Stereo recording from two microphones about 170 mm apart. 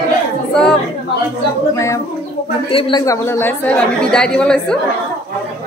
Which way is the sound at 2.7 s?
30° left (ahead or behind).